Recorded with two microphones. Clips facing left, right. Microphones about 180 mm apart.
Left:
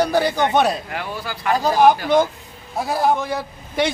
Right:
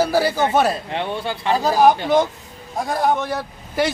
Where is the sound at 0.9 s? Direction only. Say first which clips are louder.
Right 4 dB; 25° right (ahead or behind).